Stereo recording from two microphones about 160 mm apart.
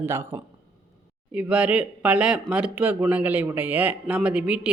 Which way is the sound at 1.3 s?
10° right (ahead or behind).